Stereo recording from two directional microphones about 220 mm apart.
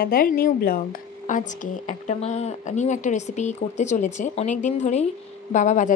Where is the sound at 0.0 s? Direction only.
40° left (ahead or behind).